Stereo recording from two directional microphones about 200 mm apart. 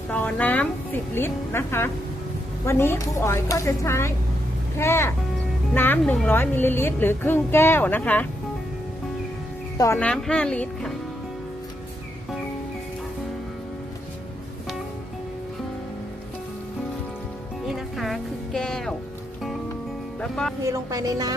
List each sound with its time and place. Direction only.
0.1 s speech: 5° left (ahead or behind)
9.7 s speech: 15° left (ahead or behind)
17.7 s music: centre (ahead or behind)
20.2 s speech: 5° left (ahead or behind)
20.7 s a woman's voice: 15° right (ahead or behind)